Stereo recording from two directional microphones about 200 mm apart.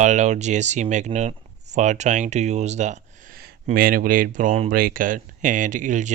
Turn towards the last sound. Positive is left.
turn(degrees=-40)  # may be behind; listen again after turning